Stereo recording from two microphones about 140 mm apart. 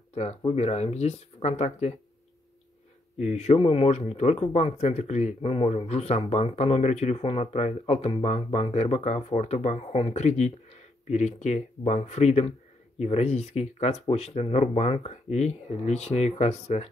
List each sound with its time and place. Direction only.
0.5 s speech: 50° left (ahead or behind)
3.2 s speech: 55° left (ahead or behind)
10.1 s speech: 55° left (ahead or behind)